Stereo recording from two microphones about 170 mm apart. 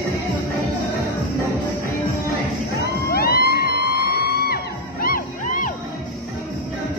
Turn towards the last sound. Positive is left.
turn(degrees=55)  # may be behind; listen again after turning